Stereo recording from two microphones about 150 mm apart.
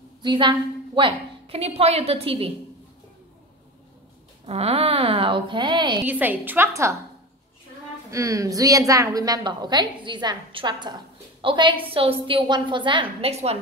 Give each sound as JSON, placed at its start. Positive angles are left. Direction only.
{"t": 0.2, "sound": "a woman's voice", "side_deg": -30}
{"t": 4.5, "sound": "a woman's voice", "side_deg": -40}
{"t": 6.0, "sound": "a woman's voice", "side_deg": -10}
{"t": 8.1, "sound": "a woman's voice", "side_deg": -20}